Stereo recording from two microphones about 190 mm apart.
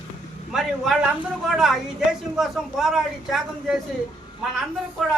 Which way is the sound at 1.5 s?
Centre (ahead or behind).